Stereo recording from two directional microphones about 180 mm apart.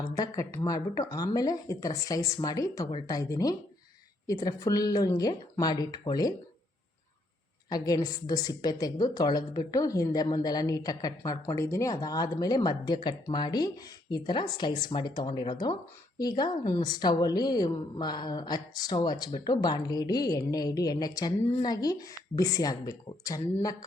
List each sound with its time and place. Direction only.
0.2 s speech: 15° left (ahead or behind)
7.7 s speech: 20° left (ahead or behind)